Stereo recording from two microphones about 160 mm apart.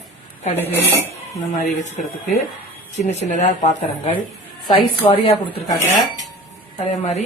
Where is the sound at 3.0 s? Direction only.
45° left (ahead or behind).